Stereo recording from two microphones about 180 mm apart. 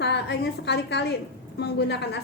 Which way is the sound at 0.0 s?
70° left (ahead or behind).